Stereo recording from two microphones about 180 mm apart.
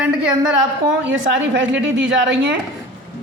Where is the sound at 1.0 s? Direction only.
85° right.